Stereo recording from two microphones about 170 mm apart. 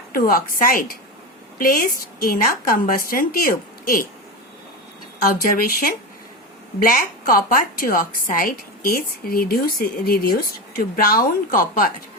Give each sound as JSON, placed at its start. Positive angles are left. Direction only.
{"t": 0.1, "sound": "a woman's voice", "side_deg": 60}
{"t": 5.2, "sound": "a woman's voice", "side_deg": 55}